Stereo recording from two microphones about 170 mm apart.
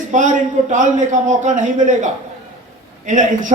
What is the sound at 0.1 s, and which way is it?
Speech, 45° right (ahead or behind).